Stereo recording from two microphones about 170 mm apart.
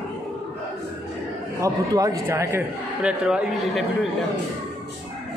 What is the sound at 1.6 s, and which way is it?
A man's voice, 20° right (ahead or behind).